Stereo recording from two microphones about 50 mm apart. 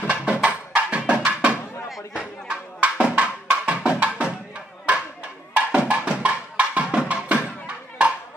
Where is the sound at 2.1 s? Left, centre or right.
Centre.